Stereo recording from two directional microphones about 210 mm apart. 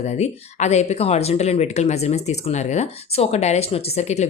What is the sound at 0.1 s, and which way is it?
Speech, 30° left (ahead or behind).